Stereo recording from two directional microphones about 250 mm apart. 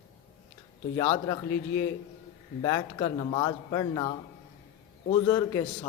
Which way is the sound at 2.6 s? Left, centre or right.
Centre.